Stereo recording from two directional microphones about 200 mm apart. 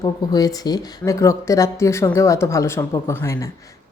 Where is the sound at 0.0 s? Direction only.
20° left (ahead or behind).